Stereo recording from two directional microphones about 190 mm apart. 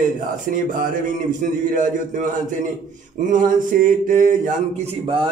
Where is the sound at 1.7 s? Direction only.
45° right (ahead or behind).